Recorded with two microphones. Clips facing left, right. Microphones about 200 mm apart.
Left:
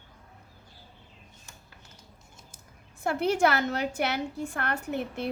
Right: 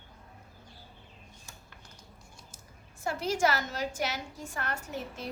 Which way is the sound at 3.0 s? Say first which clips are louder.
Left 4 dB; 60° left (ahead or behind).